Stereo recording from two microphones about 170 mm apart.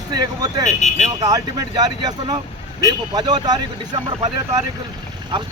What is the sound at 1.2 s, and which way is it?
Speech, 20° right (ahead or behind).